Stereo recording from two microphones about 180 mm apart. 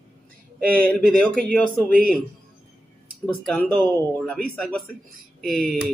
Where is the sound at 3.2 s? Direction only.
5° left (ahead or behind).